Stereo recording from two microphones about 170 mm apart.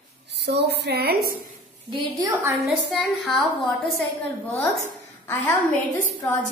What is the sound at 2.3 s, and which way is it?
Speech, 15° right (ahead or behind).